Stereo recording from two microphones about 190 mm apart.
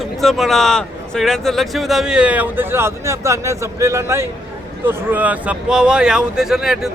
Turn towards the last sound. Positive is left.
turn(degrees=0)  # may be behind; listen again after turning